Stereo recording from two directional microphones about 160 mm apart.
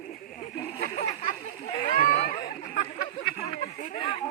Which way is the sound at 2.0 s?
60° left (ahead or behind).